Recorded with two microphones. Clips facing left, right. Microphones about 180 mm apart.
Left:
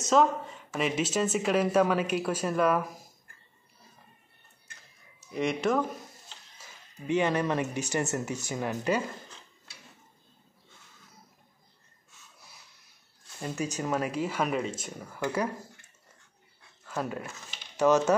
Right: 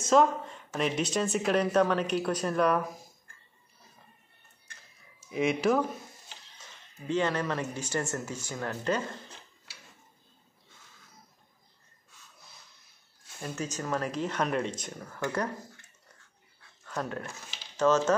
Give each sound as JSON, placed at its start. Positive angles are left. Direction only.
{"t": 0.0, "sound": "speech", "side_deg": 0}
{"t": 5.3, "sound": "speech", "side_deg": 0}
{"t": 7.1, "sound": "speech", "side_deg": 15}
{"t": 13.4, "sound": "speech", "side_deg": 10}
{"t": 16.8, "sound": "speech", "side_deg": 5}